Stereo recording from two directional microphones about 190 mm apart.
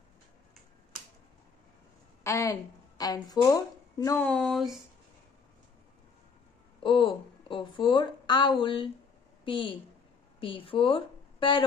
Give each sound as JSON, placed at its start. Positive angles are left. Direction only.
{"t": 2.2, "sound": "a woman's voice", "side_deg": 15}
{"t": 4.2, "sound": "speech", "side_deg": 5}
{"t": 6.8, "sound": "a woman's voice", "side_deg": 25}